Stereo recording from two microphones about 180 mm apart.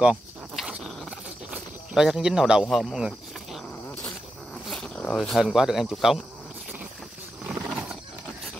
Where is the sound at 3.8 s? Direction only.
10° left (ahead or behind).